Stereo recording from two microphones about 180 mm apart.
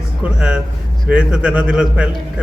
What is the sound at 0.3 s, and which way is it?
A man's voice, 5° right (ahead or behind).